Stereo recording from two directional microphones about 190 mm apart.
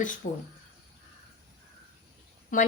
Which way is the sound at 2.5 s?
45° left (ahead or behind).